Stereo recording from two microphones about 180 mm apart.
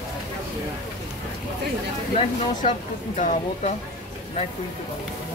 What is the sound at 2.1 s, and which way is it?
Speech, 40° left (ahead or behind).